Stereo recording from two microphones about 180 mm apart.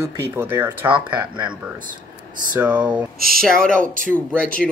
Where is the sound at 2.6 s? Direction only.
5° right (ahead or behind).